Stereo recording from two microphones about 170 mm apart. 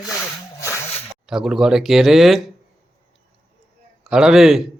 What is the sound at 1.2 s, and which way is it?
Speech, 5° right (ahead or behind).